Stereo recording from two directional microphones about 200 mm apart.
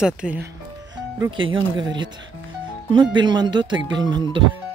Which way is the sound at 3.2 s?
20° right (ahead or behind).